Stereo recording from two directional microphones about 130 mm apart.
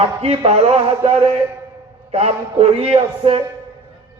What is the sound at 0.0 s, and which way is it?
A man's voice, 50° right (ahead or behind).